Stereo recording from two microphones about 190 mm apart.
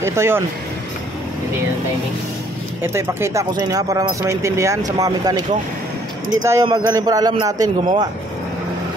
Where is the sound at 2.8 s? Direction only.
15° right (ahead or behind).